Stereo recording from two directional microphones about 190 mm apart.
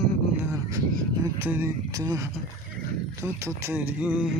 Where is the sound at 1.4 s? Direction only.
10° right (ahead or behind).